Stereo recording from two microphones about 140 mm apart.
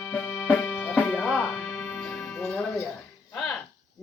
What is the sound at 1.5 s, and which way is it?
Music, 10° left (ahead or behind).